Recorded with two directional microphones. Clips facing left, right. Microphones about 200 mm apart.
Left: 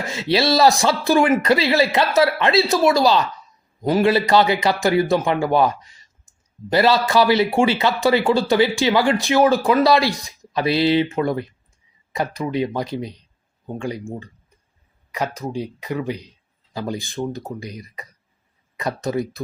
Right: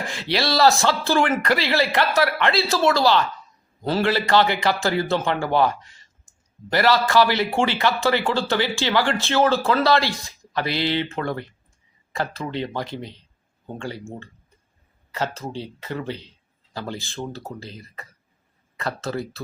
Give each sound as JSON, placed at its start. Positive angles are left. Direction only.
{"t": 0.1, "sound": "a man's voice", "side_deg": 20}
{"t": 15.1, "sound": "a man's voice", "side_deg": 15}